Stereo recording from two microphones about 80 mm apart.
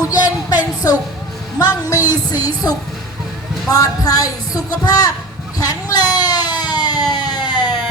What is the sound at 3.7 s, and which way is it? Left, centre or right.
Speech, left.